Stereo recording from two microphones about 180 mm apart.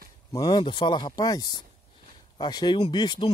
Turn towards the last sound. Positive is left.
turn(degrees=25)  # may be behind; listen again after turning